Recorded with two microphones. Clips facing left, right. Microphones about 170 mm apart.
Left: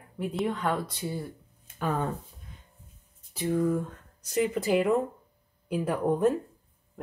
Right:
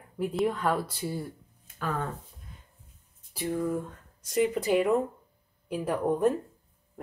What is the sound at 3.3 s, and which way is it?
Speech, 5° right (ahead or behind).